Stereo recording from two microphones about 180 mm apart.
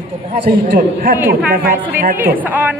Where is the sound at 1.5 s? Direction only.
55° right (ahead or behind).